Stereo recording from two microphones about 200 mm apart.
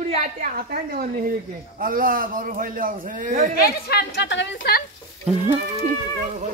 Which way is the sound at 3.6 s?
55° left (ahead or behind).